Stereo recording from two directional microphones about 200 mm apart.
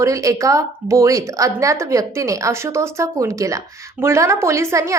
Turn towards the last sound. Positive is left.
turn(degrees=-15)  # may be behind; listen again after turning